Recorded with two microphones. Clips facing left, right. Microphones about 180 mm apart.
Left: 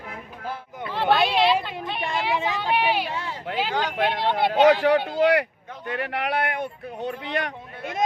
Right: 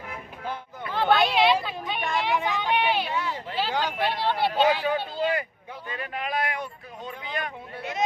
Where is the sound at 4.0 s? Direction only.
60° left (ahead or behind).